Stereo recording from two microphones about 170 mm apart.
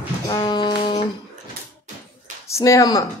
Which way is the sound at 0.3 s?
25° left (ahead or behind).